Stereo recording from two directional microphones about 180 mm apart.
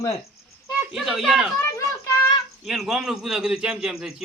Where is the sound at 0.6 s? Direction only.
Centre (ahead or behind).